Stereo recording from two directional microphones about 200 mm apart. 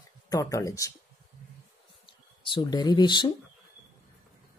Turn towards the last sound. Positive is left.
turn(degrees=20)  # may be behind; listen again after turning